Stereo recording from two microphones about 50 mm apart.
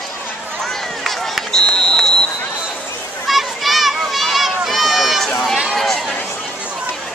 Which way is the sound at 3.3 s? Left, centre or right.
Centre.